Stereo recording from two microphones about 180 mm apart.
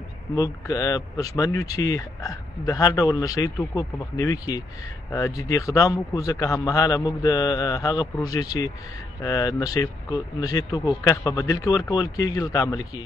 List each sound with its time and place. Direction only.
0.4 s speech: 20° left (ahead or behind)